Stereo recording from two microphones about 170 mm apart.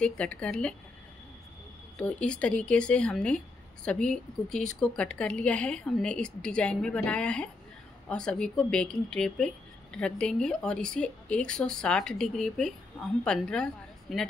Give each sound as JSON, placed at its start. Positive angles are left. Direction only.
{"t": 0.0, "sound": "a woman's voice", "side_deg": 5}
{"t": 2.0, "sound": "a woman's voice", "side_deg": 5}